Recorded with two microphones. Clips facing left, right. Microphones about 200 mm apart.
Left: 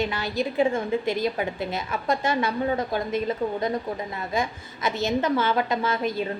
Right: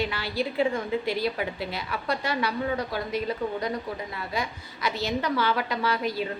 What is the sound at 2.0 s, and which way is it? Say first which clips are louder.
Speech: left 4 dB; 45° left (ahead or behind).